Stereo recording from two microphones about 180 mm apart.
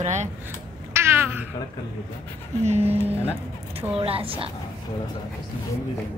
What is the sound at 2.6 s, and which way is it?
Speech, 35° right (ahead or behind).